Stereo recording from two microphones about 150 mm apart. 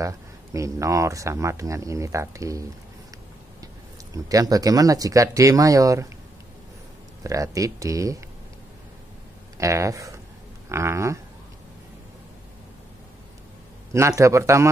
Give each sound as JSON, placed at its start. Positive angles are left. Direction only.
{"t": 0.0, "sound": "speech", "side_deg": -20}
{"t": 3.6, "sound": "speech", "side_deg": -25}
{"t": 7.2, "sound": "speech", "side_deg": -20}
{"t": 9.6, "sound": "speech", "side_deg": -20}
{"t": 10.7, "sound": "a sound", "side_deg": -20}
{"t": 13.9, "sound": "speech", "side_deg": -20}